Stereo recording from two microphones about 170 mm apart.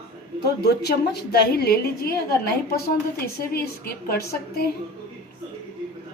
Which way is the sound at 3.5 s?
60° left (ahead or behind).